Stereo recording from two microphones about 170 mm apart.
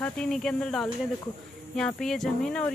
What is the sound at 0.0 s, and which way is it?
Speech, 5° left (ahead or behind).